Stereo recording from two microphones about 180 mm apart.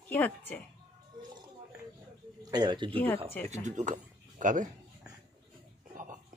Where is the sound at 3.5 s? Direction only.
45° right (ahead or behind).